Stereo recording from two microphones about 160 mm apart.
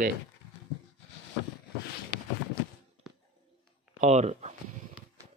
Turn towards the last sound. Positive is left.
turn(degrees=-45)  # may be behind; listen again after turning